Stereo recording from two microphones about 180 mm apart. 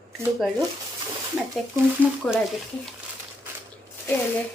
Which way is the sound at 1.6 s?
Centre (ahead or behind).